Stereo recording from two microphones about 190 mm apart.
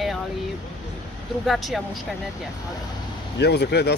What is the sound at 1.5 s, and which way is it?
Speech, centre (ahead or behind).